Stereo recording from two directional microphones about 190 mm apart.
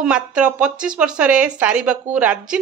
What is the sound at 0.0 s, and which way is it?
Speech, 5° right (ahead or behind).